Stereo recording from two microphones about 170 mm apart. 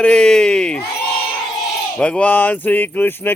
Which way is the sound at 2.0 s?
5° left (ahead or behind).